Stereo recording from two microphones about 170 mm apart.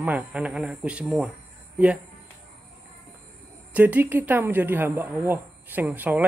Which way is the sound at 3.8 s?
10° right (ahead or behind).